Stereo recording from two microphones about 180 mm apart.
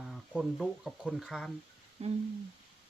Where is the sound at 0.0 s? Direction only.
Centre (ahead or behind).